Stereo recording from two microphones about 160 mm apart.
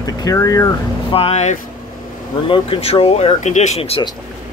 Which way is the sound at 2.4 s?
35° left (ahead or behind).